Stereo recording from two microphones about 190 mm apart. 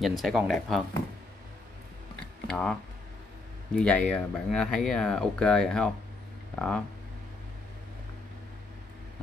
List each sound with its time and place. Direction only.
0.2 s speech: centre (ahead or behind)
2.4 s speech: 5° left (ahead or behind)